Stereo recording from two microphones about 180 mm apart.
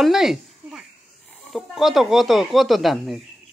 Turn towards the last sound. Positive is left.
turn(degrees=0)  # may be behind; listen again after turning